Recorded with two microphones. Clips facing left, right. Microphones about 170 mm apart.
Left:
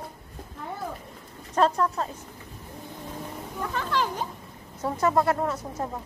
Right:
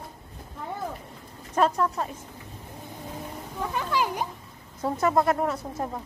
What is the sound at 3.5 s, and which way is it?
Speech, 10° right (ahead or behind).